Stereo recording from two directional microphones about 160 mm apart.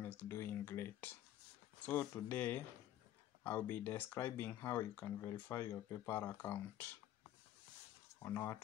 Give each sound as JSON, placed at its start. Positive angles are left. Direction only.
{"t": 0.0, "sound": "speech", "side_deg": 15}
{"t": 8.2, "sound": "speech", "side_deg": 20}